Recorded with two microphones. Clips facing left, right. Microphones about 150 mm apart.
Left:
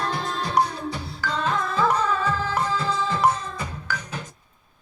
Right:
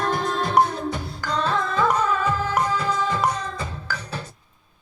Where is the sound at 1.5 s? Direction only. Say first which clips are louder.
Right 1 dB; 20° right (ahead or behind).